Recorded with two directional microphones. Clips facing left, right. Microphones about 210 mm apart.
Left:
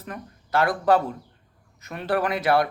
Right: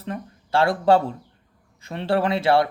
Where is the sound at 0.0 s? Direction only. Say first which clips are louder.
Right 5 dB; 30° right (ahead or behind).